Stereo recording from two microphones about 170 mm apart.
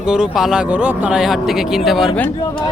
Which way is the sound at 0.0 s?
5° right (ahead or behind).